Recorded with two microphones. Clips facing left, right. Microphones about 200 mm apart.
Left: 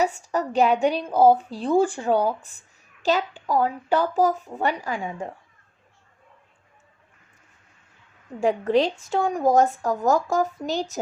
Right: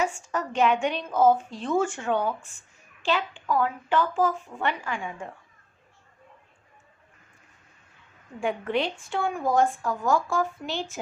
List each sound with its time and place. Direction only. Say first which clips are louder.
0.0 s a woman's voice: left 4 dB; 35° left (ahead or behind)
8.4 s a woman's voice: left 6 dB; 40° left (ahead or behind)